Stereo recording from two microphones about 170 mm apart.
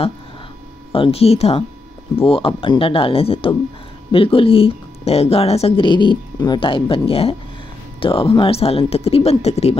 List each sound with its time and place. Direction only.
0.9 s speech: 35° left (ahead or behind)